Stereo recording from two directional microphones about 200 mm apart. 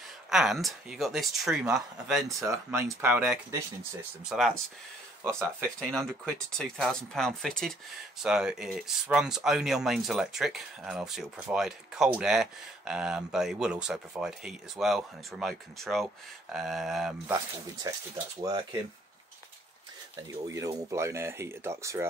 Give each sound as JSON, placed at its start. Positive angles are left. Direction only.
{"t": 0.3, "sound": "speech", "side_deg": 0}
{"t": 2.4, "sound": "speech", "side_deg": -15}
{"t": 5.2, "sound": "speech", "side_deg": -15}
{"t": 5.8, "sound": "speech", "side_deg": 5}
{"t": 17.9, "sound": "speech", "side_deg": -15}
{"t": 20.4, "sound": "speech", "side_deg": -15}